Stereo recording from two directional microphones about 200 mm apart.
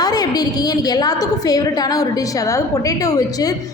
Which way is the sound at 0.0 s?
20° left (ahead or behind).